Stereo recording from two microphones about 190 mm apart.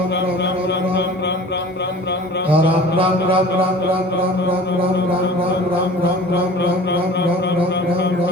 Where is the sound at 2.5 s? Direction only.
30° right (ahead or behind).